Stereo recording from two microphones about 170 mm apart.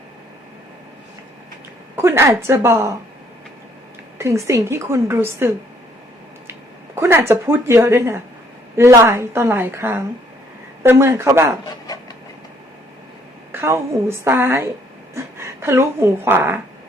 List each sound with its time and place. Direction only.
2.0 s a woman's voice: 15° right (ahead or behind)
4.2 s a woman's voice: 15° right (ahead or behind)
13.5 s a woman's voice: 15° right (ahead or behind)